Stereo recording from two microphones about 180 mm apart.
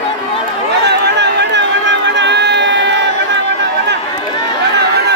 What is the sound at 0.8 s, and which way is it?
Crowd, 70° right (ahead or behind).